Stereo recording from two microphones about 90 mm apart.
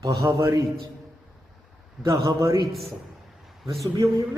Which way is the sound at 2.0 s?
35° right (ahead or behind).